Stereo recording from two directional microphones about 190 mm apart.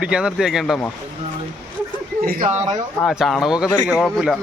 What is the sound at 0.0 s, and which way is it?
Speech, 5° right (ahead or behind).